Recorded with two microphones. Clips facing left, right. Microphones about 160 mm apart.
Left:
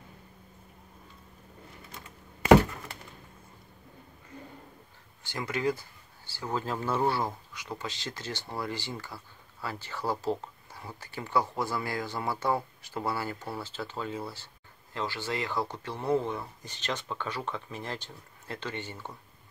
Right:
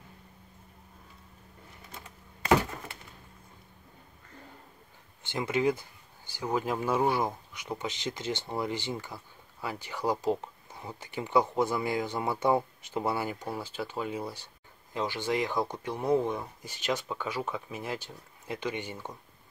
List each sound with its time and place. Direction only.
5.2 s speech: 20° right (ahead or behind)